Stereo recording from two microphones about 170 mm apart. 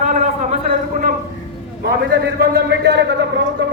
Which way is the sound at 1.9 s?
75° right (ahead or behind).